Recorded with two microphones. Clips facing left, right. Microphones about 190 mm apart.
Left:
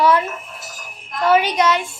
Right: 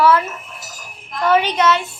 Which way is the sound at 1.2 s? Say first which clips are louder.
Even; 10° left (ahead or behind).